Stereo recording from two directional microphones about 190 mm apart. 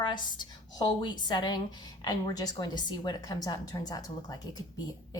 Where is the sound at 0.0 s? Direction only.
25° left (ahead or behind).